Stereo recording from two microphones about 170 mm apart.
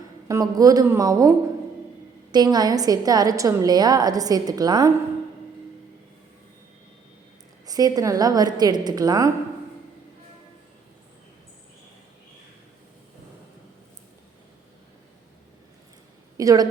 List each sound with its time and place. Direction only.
0.3 s a woman's voice: 20° right (ahead or behind)
2.3 s a woman's voice: 25° right (ahead or behind)
7.7 s a woman's voice: 20° right (ahead or behind)
16.4 s a woman's voice: 20° right (ahead or behind)